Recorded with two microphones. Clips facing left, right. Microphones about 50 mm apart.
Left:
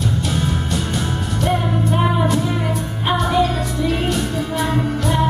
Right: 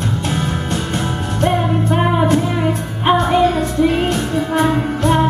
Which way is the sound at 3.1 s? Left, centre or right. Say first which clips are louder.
Right 4 dB; right.